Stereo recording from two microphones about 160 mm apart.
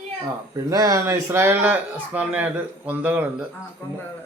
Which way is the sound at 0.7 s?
20° right (ahead or behind).